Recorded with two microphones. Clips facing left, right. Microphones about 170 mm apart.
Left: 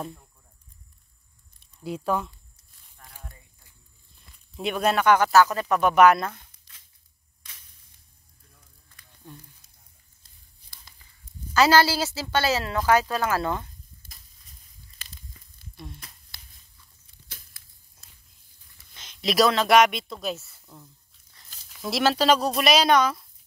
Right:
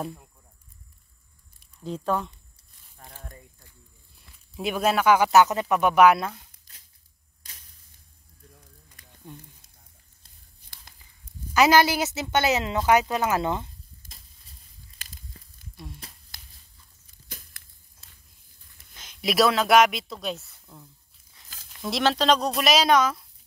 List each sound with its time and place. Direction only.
1.8 s speech: 10° left (ahead or behind)
3.0 s a sound: 30° right (ahead or behind)
4.6 s speech: 5° right (ahead or behind)
5.3 s speech: 20° right (ahead or behind)
8.9 s a sound: 15° right (ahead or behind)
11.5 s a woman's voice: 15° right (ahead or behind)
18.9 s speech: 5° right (ahead or behind)